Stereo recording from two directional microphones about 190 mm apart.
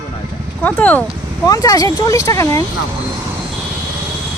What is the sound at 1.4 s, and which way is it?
Speech, 20° left (ahead or behind).